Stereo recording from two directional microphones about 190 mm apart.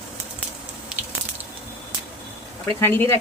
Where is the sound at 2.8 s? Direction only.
10° left (ahead or behind).